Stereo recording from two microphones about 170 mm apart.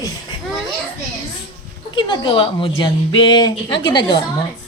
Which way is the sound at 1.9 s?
25° left (ahead or behind).